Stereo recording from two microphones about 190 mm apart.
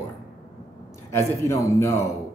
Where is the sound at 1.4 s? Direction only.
15° left (ahead or behind).